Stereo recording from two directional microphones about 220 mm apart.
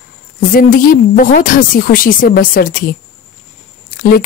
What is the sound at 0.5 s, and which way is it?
A woman's voice, 40° left (ahead or behind).